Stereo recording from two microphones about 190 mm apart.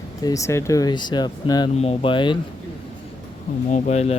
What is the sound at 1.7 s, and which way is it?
Speech, 30° left (ahead or behind).